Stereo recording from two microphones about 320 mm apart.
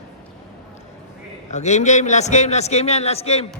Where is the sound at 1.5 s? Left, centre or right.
Left.